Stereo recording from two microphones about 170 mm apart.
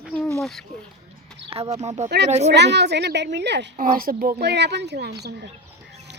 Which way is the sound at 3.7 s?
55° right (ahead or behind).